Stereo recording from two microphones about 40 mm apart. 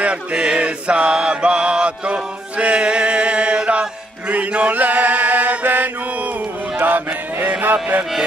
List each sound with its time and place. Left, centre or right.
0.0 s mantra: right
4.3 s chant: right
6.8 s music: right